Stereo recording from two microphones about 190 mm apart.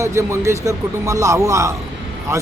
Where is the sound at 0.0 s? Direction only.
15° right (ahead or behind).